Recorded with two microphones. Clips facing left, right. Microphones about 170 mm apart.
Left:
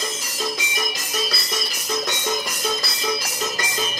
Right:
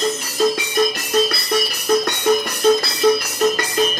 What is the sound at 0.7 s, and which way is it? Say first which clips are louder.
Music: right 11 dB; 65° right (ahead or behind).